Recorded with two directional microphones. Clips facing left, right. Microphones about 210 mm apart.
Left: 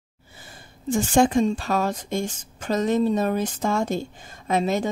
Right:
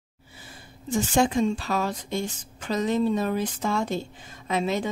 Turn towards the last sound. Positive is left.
turn(degrees=45)  # may be behind; listen again after turning